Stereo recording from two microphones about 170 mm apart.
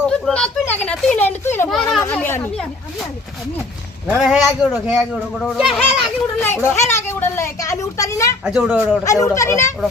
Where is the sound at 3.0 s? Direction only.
Centre (ahead or behind).